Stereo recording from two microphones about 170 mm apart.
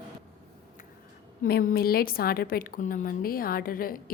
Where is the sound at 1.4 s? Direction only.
55° left (ahead or behind).